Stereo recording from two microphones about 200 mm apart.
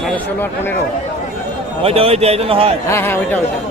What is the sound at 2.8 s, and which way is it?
Speech, 15° left (ahead or behind).